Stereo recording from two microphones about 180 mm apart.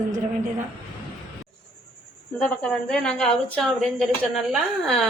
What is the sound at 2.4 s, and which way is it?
A woman's voice, 5° left (ahead or behind).